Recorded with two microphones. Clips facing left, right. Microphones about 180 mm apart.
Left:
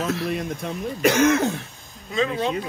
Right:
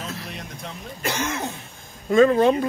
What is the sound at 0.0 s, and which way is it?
Speech, 75° left (ahead or behind).